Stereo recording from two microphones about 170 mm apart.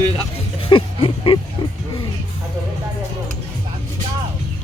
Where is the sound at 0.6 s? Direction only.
30° left (ahead or behind).